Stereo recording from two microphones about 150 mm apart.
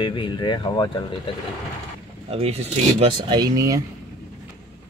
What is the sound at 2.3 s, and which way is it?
Speech, 40° right (ahead or behind).